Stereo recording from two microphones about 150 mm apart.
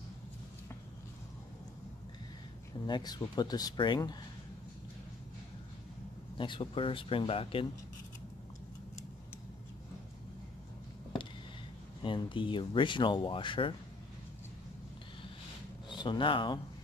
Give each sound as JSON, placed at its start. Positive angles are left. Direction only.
{"t": 2.9, "sound": "speech", "side_deg": 25}
{"t": 6.3, "sound": "speech", "side_deg": 35}
{"t": 12.0, "sound": "speech", "side_deg": 35}
{"t": 15.9, "sound": "speech", "side_deg": 30}